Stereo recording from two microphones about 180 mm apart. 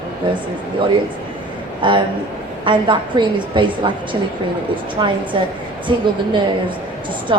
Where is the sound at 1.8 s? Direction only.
30° right (ahead or behind).